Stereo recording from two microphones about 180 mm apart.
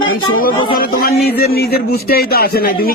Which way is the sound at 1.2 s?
60° left (ahead or behind).